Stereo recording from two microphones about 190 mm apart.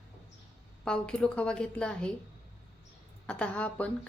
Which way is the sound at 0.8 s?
5° left (ahead or behind).